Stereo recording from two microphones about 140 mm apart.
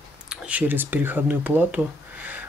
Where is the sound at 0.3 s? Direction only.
10° right (ahead or behind).